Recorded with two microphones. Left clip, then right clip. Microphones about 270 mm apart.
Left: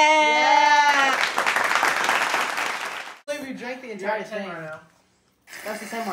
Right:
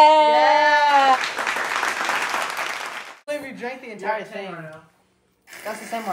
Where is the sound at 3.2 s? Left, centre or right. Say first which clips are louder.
Right 5 dB; right.